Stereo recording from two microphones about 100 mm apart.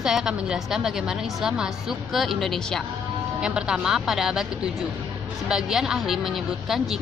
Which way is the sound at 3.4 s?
10° right (ahead or behind).